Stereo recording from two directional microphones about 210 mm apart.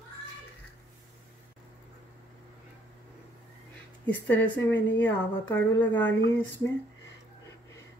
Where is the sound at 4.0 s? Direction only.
10° left (ahead or behind).